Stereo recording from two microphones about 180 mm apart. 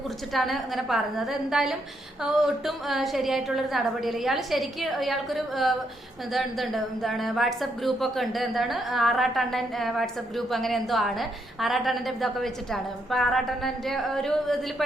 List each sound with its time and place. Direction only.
0.3 s a woman's voice: centre (ahead or behind)